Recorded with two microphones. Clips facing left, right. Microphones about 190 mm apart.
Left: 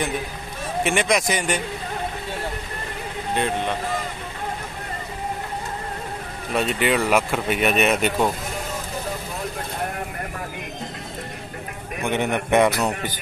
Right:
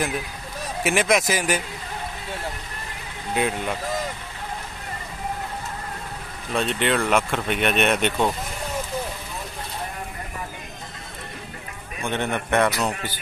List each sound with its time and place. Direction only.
0.8 s speech: centre (ahead or behind)
3.3 s speech: 5° right (ahead or behind)
6.5 s speech: 5° left (ahead or behind)
12.0 s a man's voice: 15° left (ahead or behind)